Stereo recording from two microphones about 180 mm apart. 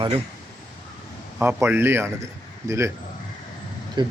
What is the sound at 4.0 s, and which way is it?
Speech, 25° right (ahead or behind).